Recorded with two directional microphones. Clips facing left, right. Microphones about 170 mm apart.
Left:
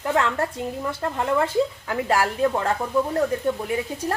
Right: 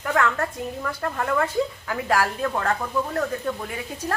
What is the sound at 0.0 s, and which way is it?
A woman's voice, 25° left (ahead or behind).